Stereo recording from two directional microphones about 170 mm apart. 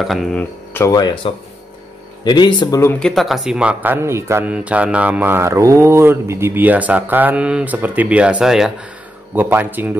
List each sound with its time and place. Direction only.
0.0 s speech: centre (ahead or behind); by 3.0 s 15° left (ahead or behind)
3.0 s speech: centre (ahead or behind)